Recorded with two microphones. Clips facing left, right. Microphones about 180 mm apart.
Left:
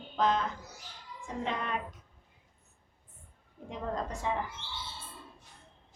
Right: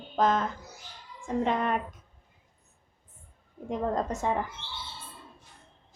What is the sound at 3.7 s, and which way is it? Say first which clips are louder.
Speech: right 7 dB; 45° right (ahead or behind).